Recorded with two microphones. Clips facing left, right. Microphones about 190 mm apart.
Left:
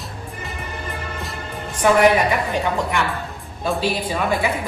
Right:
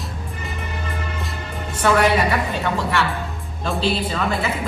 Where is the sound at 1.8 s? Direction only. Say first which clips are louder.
Left 2 dB; 15° left (ahead or behind).